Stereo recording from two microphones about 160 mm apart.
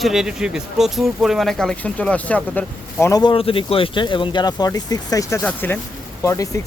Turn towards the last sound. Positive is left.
turn(degrees=20)  # may be behind; listen again after turning